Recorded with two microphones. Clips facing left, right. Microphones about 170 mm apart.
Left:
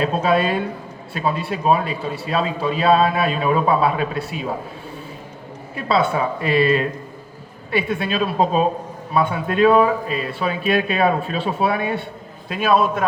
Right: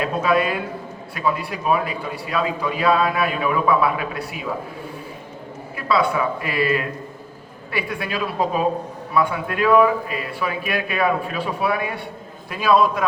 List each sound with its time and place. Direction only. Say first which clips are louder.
0.0 s a man's voice: left 2 dB; 30° left (ahead or behind)
5.7 s a man's voice: left 1 dB; 25° left (ahead or behind)
12.5 s a man's voice: even; 55° left (ahead or behind)